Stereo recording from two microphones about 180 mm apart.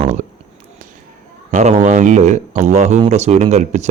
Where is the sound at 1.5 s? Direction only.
40° right (ahead or behind).